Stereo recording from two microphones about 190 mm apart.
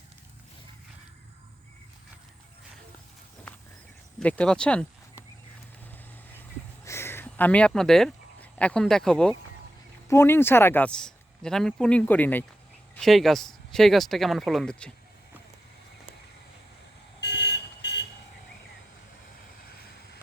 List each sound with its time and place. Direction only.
4.2 s speech: 5° left (ahead or behind)
6.8 s a sound: 15° left (ahead or behind)
10.1 s speech: 10° left (ahead or behind)
17.2 s vehicle: 65° left (ahead or behind)